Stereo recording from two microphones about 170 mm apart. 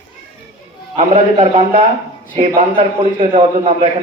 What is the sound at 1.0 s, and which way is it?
Speech, 35° right (ahead or behind).